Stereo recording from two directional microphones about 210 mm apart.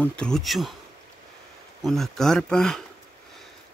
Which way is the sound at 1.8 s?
Centre (ahead or behind).